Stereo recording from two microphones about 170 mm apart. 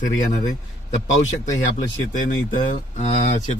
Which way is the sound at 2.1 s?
50° left (ahead or behind).